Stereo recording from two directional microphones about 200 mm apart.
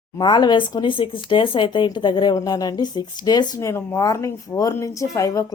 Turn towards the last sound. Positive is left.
turn(degrees=15)  # may be behind; listen again after turning